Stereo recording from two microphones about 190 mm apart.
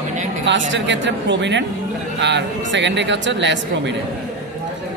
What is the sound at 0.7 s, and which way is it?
Speech, 70° right (ahead or behind).